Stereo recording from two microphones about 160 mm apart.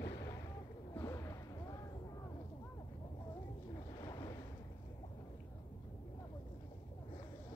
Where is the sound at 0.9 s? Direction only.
20° left (ahead or behind).